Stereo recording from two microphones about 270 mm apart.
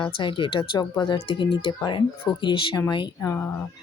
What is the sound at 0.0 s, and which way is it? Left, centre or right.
Speech, centre.